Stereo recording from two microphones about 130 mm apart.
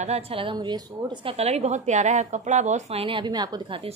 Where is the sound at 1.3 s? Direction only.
55° right (ahead or behind); by 3.8 s 30° right (ahead or behind).